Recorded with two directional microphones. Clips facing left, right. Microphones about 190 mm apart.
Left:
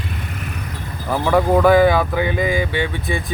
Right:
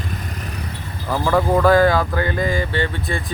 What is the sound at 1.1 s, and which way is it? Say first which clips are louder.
Speech: left 2 dB; 15° left (ahead or behind).